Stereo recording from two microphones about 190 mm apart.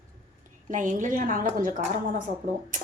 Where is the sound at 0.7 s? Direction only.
40° right (ahead or behind).